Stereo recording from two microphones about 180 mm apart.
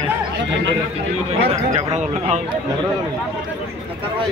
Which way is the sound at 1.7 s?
40° right (ahead or behind).